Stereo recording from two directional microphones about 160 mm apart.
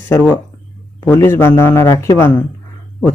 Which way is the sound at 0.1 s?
10° left (ahead or behind).